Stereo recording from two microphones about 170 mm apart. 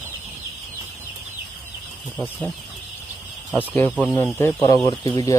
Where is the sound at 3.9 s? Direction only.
10° left (ahead or behind).